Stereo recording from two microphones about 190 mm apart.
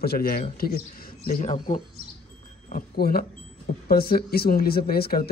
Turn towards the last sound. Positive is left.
turn(degrees=55)  # may be behind; listen again after turning